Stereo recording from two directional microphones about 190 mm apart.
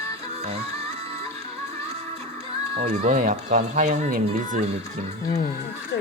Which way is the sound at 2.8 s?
40° right (ahead or behind).